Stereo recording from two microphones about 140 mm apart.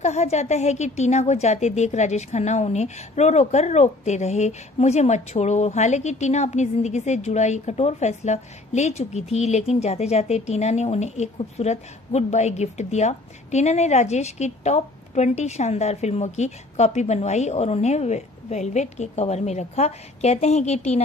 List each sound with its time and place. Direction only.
0.0 s a woman's voice: 55° left (ahead or behind)